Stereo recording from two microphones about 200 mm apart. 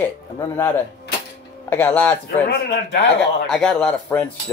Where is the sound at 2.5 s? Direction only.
60° left (ahead or behind).